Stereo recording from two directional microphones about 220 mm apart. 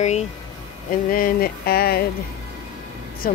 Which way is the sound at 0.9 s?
40° left (ahead or behind).